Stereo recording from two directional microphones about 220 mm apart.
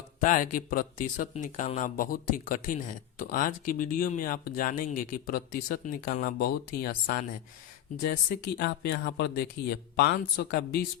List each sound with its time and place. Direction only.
0.2 s speech: 35° left (ahead or behind)
3.2 s speech: 40° left (ahead or behind)